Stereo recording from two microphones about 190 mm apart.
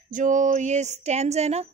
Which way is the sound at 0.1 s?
40° right (ahead or behind).